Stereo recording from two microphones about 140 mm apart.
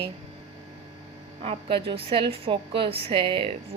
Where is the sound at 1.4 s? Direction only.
40° right (ahead or behind).